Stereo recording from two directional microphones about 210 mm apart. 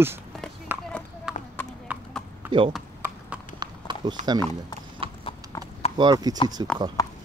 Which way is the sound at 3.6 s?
20° right (ahead or behind).